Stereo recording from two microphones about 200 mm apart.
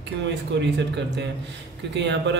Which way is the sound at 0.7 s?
60° right (ahead or behind).